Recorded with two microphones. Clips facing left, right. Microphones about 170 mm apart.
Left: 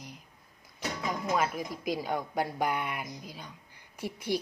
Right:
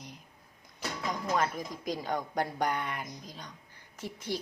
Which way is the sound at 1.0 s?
5° left (ahead or behind).